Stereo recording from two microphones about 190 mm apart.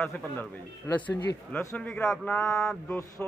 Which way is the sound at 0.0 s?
10° left (ahead or behind).